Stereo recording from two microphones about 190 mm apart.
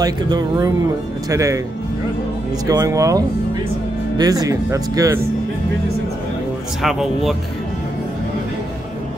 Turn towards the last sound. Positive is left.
turn(degrees=0)  # may be behind; listen again after turning